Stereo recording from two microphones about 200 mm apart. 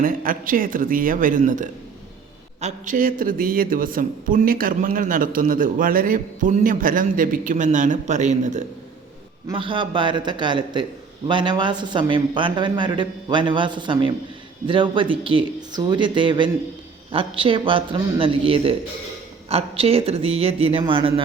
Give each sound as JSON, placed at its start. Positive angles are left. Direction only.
{"t": 0.0, "sound": "a man's voice", "side_deg": -45}
{"t": 9.5, "sound": "speech", "side_deg": -25}